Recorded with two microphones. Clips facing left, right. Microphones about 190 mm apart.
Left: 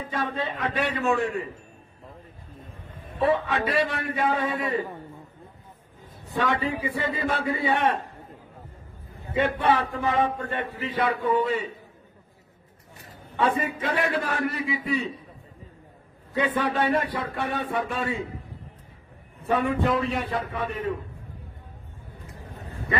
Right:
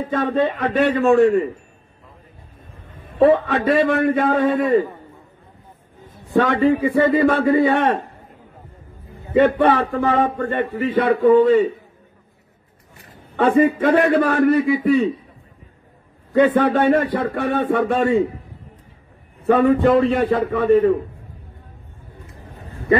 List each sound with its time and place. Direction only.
0.1 s a man's voice: 50° right (ahead or behind)
3.2 s speech: 55° right (ahead or behind)
6.3 s a man's voice: 50° right (ahead or behind)
6.7 s speech: 60° right (ahead or behind)
9.3 s a man's voice: 60° right (ahead or behind)
13.7 s a man's voice: 55° right (ahead or behind)
16.3 s speech: 50° right (ahead or behind)
19.4 s speech: 55° right (ahead or behind)